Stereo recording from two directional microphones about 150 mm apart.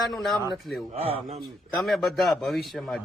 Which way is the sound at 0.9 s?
40° right (ahead or behind).